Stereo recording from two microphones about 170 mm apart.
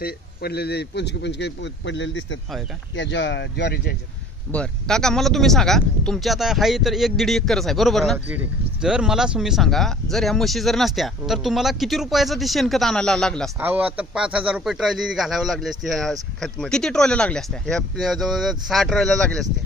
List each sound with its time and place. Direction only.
0.0 s speech: 70° left (ahead or behind)
4.5 s speech: 5° left (ahead or behind)
13.6 s speech: 10° right (ahead or behind)